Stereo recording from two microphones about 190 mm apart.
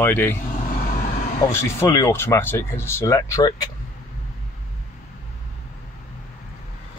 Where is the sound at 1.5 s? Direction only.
15° left (ahead or behind).